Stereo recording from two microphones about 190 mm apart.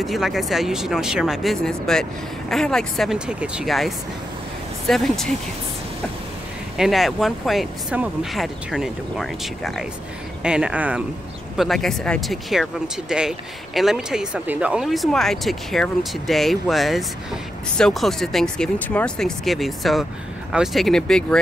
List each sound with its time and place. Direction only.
0.0 s speech: centre (ahead or behind)
6.8 s speech: centre (ahead or behind)